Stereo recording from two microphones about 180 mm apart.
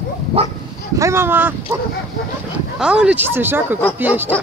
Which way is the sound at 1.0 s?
15° right (ahead or behind).